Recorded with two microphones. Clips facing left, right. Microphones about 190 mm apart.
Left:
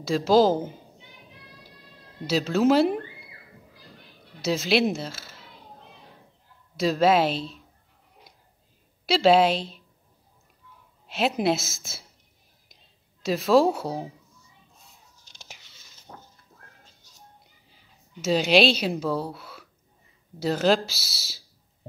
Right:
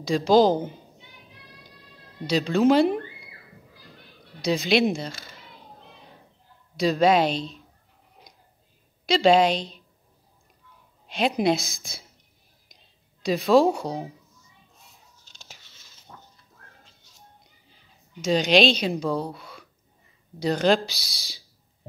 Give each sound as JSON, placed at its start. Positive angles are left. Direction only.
{"t": 0.0, "sound": "speech", "side_deg": 5}
{"t": 2.2, "sound": "speech", "side_deg": 5}
{"t": 4.4, "sound": "speech", "side_deg": 5}
{"t": 6.8, "sound": "speech", "side_deg": 0}
{"t": 9.0, "sound": "speech", "side_deg": 5}
{"t": 11.1, "sound": "speech", "side_deg": 5}
{"t": 13.2, "sound": "speech", "side_deg": 0}
{"t": 16.1, "sound": "a sound", "side_deg": 40}
{"t": 18.2, "sound": "speech", "side_deg": 5}